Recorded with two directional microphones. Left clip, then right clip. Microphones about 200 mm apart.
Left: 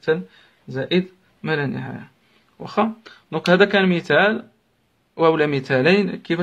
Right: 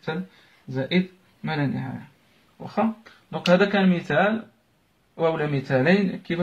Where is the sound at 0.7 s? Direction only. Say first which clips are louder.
Left 4 dB; 55° left (ahead or behind).